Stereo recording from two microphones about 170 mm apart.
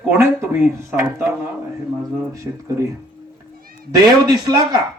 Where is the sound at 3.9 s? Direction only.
25° right (ahead or behind).